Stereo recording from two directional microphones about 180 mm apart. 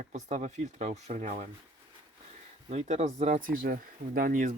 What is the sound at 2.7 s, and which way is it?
Speech, 35° right (ahead or behind).